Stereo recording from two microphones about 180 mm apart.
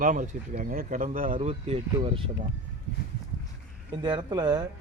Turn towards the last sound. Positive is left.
turn(degrees=-25)  # may be behind; listen again after turning